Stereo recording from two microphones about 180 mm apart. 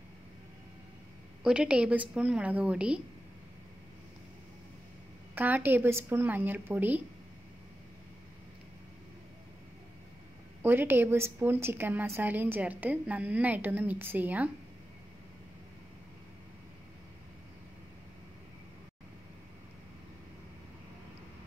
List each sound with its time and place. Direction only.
1.4 s a woman's voice: 5° right (ahead or behind)
5.3 s a woman's voice: 10° right (ahead or behind)
10.6 s a woman's voice: 10° right (ahead or behind)